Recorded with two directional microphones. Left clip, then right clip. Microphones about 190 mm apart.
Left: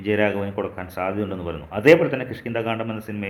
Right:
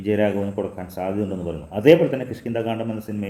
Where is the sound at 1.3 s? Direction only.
10° left (ahead or behind).